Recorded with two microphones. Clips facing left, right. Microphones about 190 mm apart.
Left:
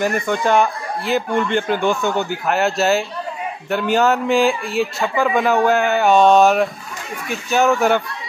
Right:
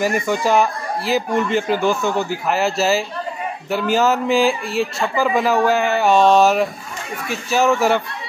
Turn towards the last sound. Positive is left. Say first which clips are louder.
# left 1 dB
turn(degrees=0)  # may be behind; listen again after turning